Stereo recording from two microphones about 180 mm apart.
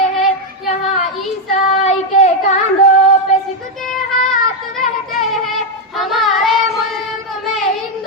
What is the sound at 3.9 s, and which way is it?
Child singing, centre (ahead or behind).